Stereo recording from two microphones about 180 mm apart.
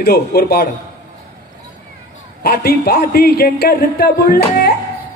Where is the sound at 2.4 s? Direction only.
60° left (ahead or behind).